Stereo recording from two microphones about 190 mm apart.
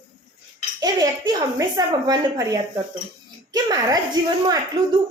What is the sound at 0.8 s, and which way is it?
A woman's voice, 20° right (ahead or behind).